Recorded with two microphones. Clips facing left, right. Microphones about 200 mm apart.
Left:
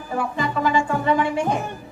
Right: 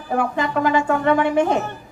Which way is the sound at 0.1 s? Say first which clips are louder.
Right 4 dB; 55° right (ahead or behind).